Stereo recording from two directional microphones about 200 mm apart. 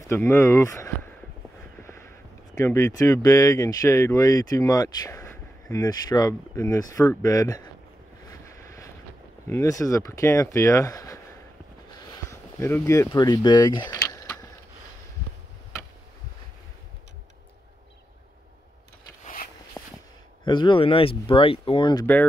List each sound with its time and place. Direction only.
0.1 s speech: 15° left (ahead or behind)
1.8 s a sound: 15° left (ahead or behind)
2.5 s speech: 15° left (ahead or behind)
8.3 s vehicle: 15° left (ahead or behind)
9.5 s speech: 15° left (ahead or behind)
19.2 s a sound: 45° left (ahead or behind)
20.4 s speech: 20° left (ahead or behind)
22.0 s speech: 10° left (ahead or behind)